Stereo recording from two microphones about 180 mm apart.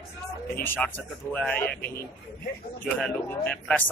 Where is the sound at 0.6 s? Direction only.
10° left (ahead or behind).